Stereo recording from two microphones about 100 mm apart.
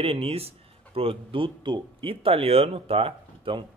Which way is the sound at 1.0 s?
65° right (ahead or behind).